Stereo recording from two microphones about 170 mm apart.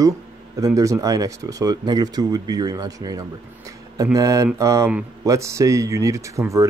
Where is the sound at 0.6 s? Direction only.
20° right (ahead or behind).